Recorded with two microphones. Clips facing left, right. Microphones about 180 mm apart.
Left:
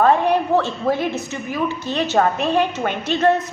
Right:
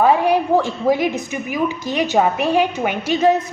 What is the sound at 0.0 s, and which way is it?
A woman's voice, 10° right (ahead or behind).